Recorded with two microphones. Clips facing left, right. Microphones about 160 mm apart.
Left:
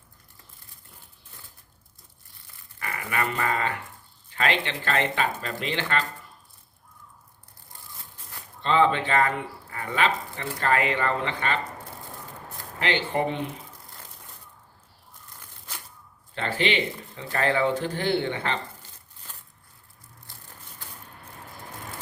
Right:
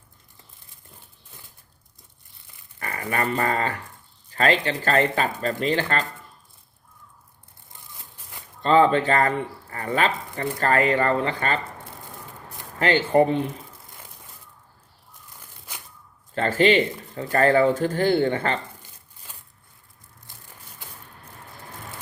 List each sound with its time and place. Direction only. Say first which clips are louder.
2.7 s speech: right 3 dB; 40° right (ahead or behind)
8.6 s speech: right 4 dB; 40° right (ahead or behind)
12.8 s speech: right 7 dB; 45° right (ahead or behind)
15.4 s a sound: even; 10° right (ahead or behind)
16.3 s speech: right 7 dB; 45° right (ahead or behind)
18.8 s a sound: even; 10° right (ahead or behind)